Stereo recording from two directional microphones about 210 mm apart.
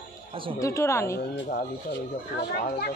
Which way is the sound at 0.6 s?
15° left (ahead or behind).